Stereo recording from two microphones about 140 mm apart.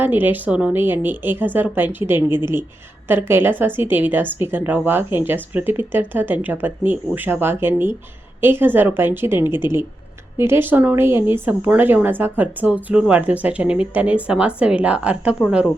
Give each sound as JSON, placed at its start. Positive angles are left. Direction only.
{"t": 0.0, "sound": "speech", "side_deg": -15}